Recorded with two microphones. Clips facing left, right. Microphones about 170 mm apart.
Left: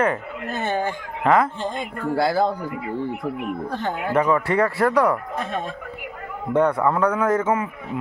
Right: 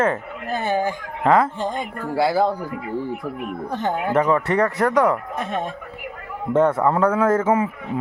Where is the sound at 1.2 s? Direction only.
30° right (ahead or behind).